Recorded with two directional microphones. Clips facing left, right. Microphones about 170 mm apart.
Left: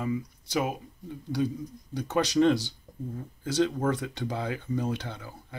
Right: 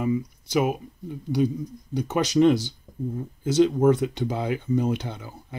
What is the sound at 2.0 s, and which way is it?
Speech, 20° right (ahead or behind).